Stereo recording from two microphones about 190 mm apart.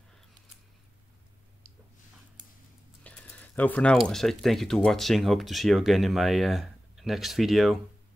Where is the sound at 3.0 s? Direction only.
5° left (ahead or behind).